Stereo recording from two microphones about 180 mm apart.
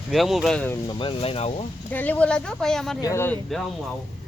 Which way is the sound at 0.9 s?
30° left (ahead or behind).